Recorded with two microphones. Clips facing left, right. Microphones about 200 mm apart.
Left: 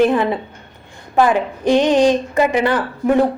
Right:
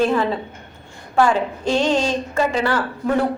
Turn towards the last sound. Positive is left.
turn(degrees=15)  # may be behind; listen again after turning